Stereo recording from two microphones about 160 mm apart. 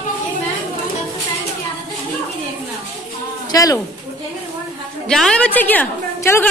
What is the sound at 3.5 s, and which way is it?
Speech, 20° left (ahead or behind).